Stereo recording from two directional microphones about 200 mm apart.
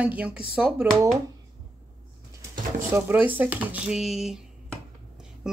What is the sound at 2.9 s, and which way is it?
Speech, 10° right (ahead or behind).